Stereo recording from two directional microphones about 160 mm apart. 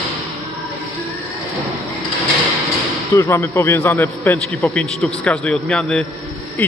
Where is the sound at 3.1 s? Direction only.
15° left (ahead or behind).